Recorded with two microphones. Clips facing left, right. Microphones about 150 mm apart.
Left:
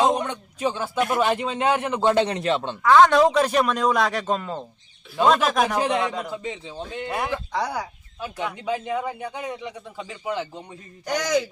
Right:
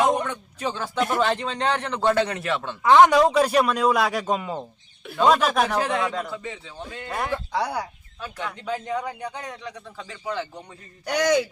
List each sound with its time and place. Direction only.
0.0 s a man's voice: 20° left (ahead or behind)
2.8 s speech: 20° right (ahead or behind)
3.1 s speech: 5° right (ahead or behind)
5.0 s a sound: 65° right (ahead or behind)
5.4 s a man's voice: 5° left (ahead or behind)
7.2 s speech: 5° right (ahead or behind)
8.2 s a man's voice: 15° left (ahead or behind)